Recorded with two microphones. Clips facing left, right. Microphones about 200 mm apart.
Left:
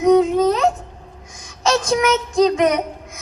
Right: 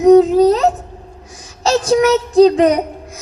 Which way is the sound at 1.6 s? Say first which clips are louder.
Right 5 dB; 35° right (ahead or behind).